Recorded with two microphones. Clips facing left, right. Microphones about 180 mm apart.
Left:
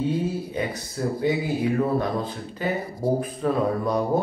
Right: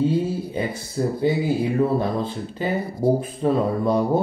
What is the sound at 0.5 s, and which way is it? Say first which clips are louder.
Speech: right 2 dB; 30° right (ahead or behind).